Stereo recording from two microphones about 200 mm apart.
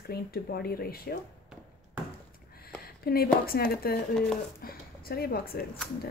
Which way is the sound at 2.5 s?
50° left (ahead or behind).